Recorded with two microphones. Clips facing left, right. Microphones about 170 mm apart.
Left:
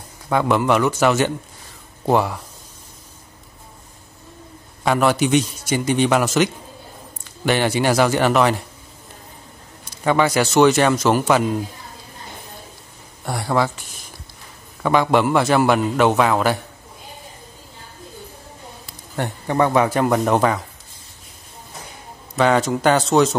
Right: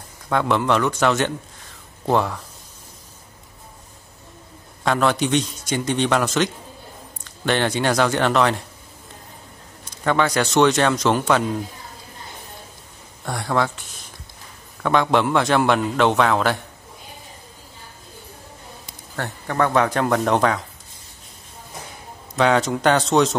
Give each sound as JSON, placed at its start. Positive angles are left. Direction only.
{"t": 0.3, "sound": "a man's voice", "side_deg": 5}
{"t": 4.8, "sound": "a man's voice", "side_deg": 5}
{"t": 10.0, "sound": "a man's voice", "side_deg": 5}
{"t": 13.2, "sound": "a man's voice", "side_deg": 5}
{"t": 19.1, "sound": "a man's voice", "side_deg": 15}
{"t": 22.3, "sound": "a man's voice", "side_deg": 0}